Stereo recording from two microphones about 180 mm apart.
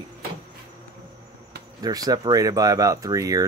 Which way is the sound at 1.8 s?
20° right (ahead or behind).